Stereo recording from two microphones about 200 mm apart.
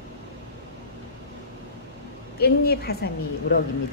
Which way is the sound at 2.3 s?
50° left (ahead or behind).